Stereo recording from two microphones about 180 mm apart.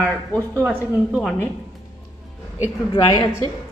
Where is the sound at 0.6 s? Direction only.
5° right (ahead or behind).